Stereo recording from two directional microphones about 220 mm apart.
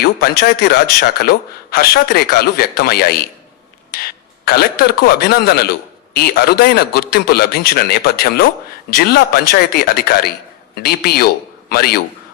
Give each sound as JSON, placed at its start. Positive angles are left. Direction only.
{"t": 0.0, "sound": "a man's voice", "side_deg": 45}